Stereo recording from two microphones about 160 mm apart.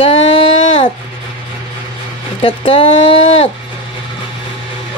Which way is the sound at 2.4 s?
35° left (ahead or behind).